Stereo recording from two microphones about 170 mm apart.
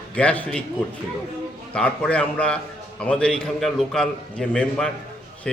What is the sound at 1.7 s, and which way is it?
A man's voice, 5° left (ahead or behind).